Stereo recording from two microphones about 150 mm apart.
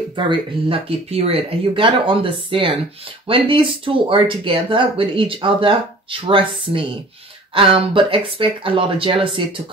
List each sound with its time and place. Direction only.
0.1 s speech: 35° right (ahead or behind)